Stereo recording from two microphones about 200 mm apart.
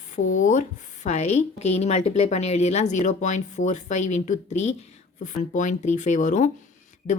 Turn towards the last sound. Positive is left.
turn(degrees=35)  # may be behind; listen again after turning